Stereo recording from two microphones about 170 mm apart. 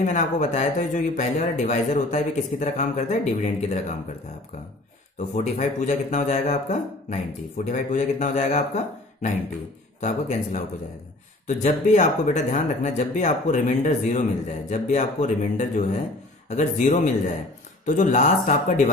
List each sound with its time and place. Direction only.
0.0 s speech: 45° left (ahead or behind)
5.3 s a man's voice: 45° left (ahead or behind)